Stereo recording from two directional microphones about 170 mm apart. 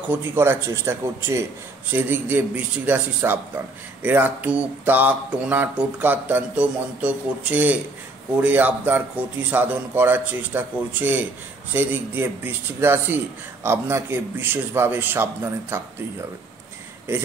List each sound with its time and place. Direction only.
0.1 s a man's voice: 15° right (ahead or behind)